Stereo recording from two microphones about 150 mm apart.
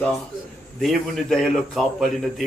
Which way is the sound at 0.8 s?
Centre (ahead or behind).